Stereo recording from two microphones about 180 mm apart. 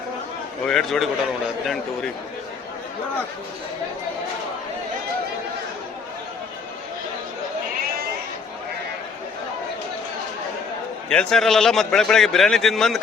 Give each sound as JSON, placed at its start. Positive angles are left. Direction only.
{"t": 0.6, "sound": "a man's voice", "side_deg": 0}
{"t": 11.1, "sound": "a man's voice", "side_deg": 5}